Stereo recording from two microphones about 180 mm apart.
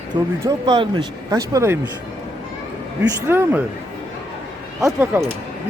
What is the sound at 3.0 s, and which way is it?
Speech, 10° right (ahead or behind).